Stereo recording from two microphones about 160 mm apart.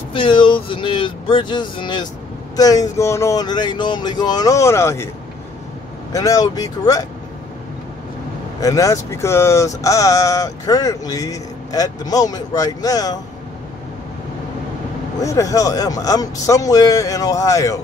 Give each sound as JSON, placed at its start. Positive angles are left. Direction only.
{"t": 0.1, "sound": "speech", "side_deg": 30}
{"t": 6.1, "sound": "speech", "side_deg": 20}
{"t": 8.5, "sound": "speech", "side_deg": 20}
{"t": 15.1, "sound": "speech", "side_deg": 20}